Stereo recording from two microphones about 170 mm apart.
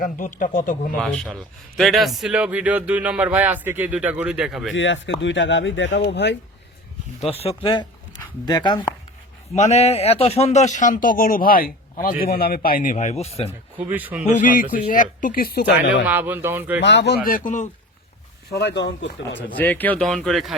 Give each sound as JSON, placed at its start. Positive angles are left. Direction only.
{"t": 0.0, "sound": "a man's voice", "side_deg": 50}
{"t": 0.9, "sound": "a man's voice", "side_deg": 0}
{"t": 4.8, "sound": "speech", "side_deg": 90}
{"t": 7.4, "sound": "speech", "side_deg": 30}
{"t": 9.5, "sound": "a man's voice", "side_deg": 40}
{"t": 13.7, "sound": "a man's voice", "side_deg": -10}
{"t": 14.3, "sound": "a man's voice", "side_deg": 50}
{"t": 16.0, "sound": "a man's voice", "side_deg": -10}
{"t": 16.8, "sound": "speech", "side_deg": 85}
{"t": 17.2, "sound": "a man's voice", "side_deg": 55}
{"t": 18.5, "sound": "speech", "side_deg": 85}
{"t": 19.5, "sound": "speech", "side_deg": 10}